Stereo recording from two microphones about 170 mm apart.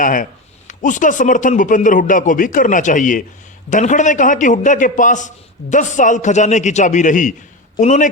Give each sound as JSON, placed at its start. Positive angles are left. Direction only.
{"t": 0.0, "sound": "speech", "side_deg": 50}